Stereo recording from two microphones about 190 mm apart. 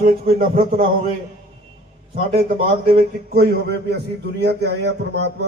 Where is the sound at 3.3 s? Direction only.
55° right (ahead or behind).